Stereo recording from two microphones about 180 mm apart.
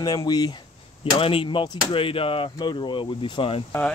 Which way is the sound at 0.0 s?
20° left (ahead or behind).